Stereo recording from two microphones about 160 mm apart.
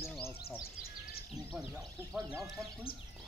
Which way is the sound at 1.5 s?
Centre (ahead or behind).